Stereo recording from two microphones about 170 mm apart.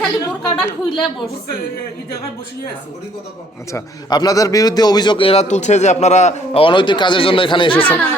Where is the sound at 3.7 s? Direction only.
25° left (ahead or behind).